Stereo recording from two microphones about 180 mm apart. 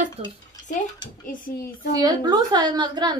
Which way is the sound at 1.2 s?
50° left (ahead or behind).